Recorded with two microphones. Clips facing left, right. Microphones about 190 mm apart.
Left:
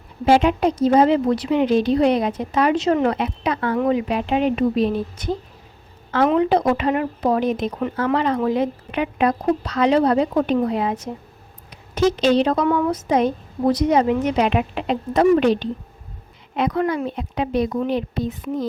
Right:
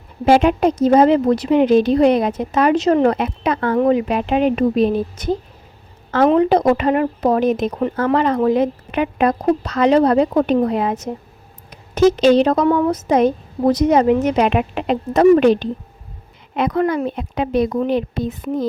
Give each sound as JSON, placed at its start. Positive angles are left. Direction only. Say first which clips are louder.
{"t": 0.3, "sound": "speech", "louder": "right 3 dB", "side_deg": -50}